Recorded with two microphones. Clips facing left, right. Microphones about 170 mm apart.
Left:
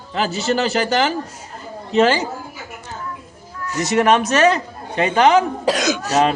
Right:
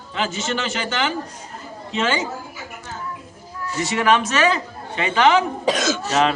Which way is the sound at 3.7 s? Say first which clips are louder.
Left 3 dB; 45° left (ahead or behind).